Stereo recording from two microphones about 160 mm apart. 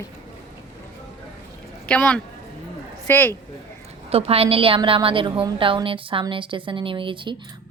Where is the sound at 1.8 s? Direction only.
5° left (ahead or behind).